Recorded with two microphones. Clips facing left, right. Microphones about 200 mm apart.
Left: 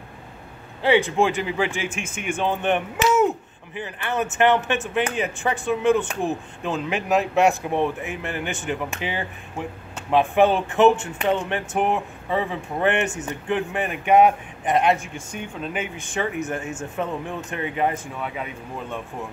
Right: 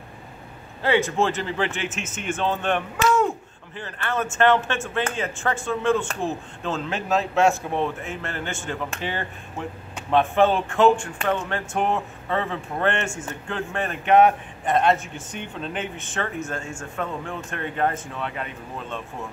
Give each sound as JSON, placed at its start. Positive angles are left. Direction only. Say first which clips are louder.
{"t": 0.8, "sound": "a man's voice", "louder": "left 2 dB", "side_deg": 15}
{"t": 1.9, "sound": "speech", "louder": "left 1 dB", "side_deg": 55}
{"t": 2.1, "sound": "a man's voice", "louder": "left 1 dB", "side_deg": 15}